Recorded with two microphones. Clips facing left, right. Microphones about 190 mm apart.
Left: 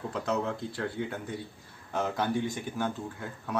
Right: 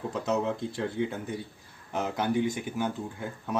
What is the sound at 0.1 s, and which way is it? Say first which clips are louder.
Speech: right 2 dB; 20° right (ahead or behind).